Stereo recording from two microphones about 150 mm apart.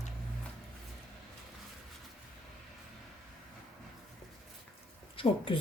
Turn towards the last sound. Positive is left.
turn(degrees=35)  # may be behind; listen again after turning